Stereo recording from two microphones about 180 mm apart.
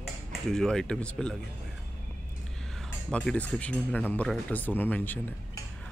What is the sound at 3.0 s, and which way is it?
Speech, 5° left (ahead or behind).